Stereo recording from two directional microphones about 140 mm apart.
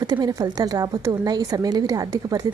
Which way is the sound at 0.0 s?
30° right (ahead or behind).